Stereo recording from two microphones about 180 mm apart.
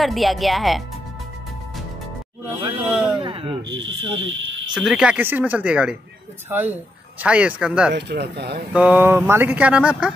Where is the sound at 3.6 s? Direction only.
90° right.